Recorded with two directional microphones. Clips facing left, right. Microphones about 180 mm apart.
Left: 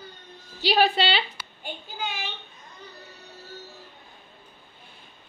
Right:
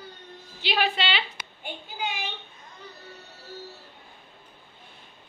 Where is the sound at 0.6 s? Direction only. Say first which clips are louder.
Left 5 dB; 35° left (ahead or behind).